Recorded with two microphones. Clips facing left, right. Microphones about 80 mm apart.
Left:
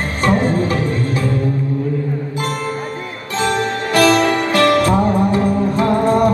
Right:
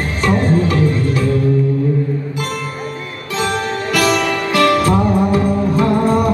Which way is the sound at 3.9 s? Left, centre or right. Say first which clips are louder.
Left 4 dB; left.